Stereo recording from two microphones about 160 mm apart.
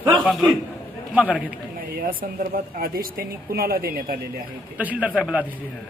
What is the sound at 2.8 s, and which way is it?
Speech, 65° right (ahead or behind).